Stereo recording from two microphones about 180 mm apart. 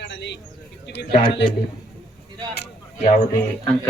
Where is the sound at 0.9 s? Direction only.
70° left (ahead or behind).